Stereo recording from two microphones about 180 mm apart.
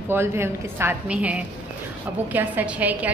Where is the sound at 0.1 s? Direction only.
15° right (ahead or behind).